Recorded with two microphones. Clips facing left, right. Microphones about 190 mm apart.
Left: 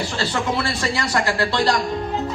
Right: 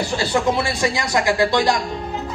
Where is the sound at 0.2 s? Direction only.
15° right (ahead or behind).